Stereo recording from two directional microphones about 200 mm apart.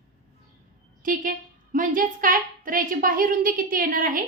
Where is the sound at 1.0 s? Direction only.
40° right (ahead or behind).